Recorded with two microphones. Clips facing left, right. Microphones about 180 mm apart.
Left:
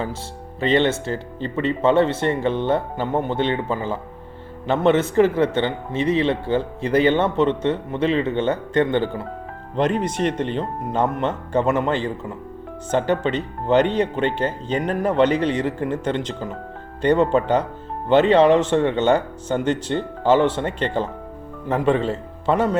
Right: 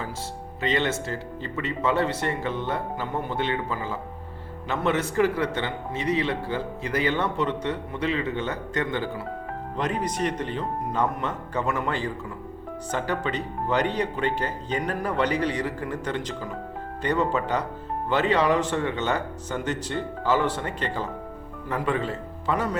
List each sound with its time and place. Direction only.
0.6 s speech: 30° left (ahead or behind)